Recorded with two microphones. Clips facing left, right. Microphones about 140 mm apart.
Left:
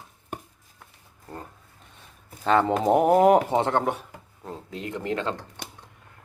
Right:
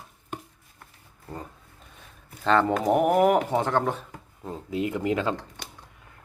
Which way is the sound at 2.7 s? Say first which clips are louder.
Left 2 dB; 25° left (ahead or behind).